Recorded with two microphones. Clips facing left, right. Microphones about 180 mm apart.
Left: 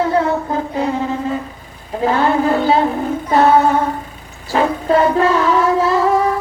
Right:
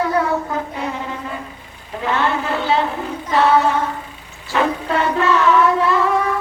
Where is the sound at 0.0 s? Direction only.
25° left (ahead or behind).